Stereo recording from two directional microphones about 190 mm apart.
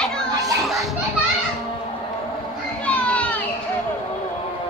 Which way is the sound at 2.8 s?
5° left (ahead or behind).